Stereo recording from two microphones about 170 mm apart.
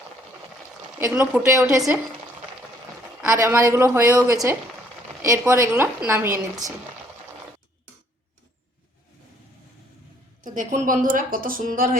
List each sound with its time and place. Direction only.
0.9 s a woman's voice: 15° right (ahead or behind)
3.2 s a woman's voice: 15° right (ahead or behind)
10.4 s speech: 50° right (ahead or behind)